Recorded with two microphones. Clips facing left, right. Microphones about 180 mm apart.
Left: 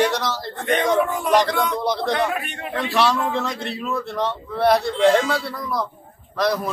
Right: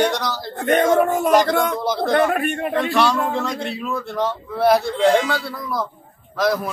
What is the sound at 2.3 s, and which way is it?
Speech, 50° right (ahead or behind).